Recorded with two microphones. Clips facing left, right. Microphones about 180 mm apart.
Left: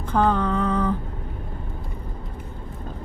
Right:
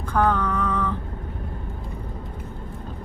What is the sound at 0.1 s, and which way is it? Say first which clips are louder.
Lullaby: left 1 dB; 20° left (ahead or behind).